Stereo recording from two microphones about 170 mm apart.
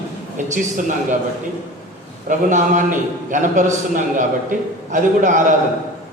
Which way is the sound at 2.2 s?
50° right (ahead or behind).